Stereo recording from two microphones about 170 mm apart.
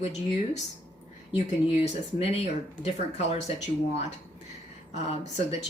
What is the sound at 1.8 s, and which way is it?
Speech, 40° left (ahead or behind).